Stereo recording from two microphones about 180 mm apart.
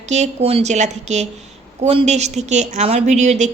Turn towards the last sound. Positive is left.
turn(degrees=-40)  # may be behind; listen again after turning